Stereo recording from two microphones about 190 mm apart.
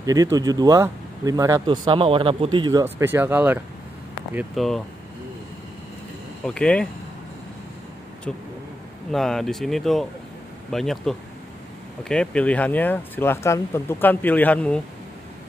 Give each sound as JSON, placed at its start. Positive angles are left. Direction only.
{"t": 0.0, "sound": "speech", "side_deg": -20}
{"t": 6.4, "sound": "speech", "side_deg": 5}
{"t": 9.1, "sound": "speech", "side_deg": 0}